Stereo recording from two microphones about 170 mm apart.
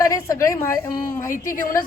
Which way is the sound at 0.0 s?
20° left (ahead or behind).